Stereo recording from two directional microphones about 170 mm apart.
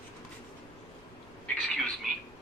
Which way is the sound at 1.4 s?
5° left (ahead or behind).